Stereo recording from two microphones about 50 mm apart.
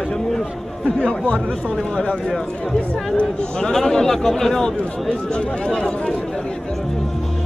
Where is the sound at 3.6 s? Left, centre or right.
Centre.